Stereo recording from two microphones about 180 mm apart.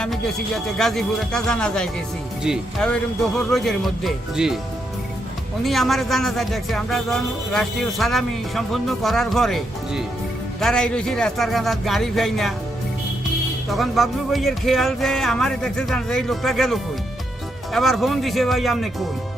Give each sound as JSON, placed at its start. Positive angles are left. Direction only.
{"t": 0.0, "sound": "speech", "side_deg": 0}
{"t": 5.6, "sound": "speech", "side_deg": 0}
{"t": 13.7, "sound": "speech", "side_deg": 0}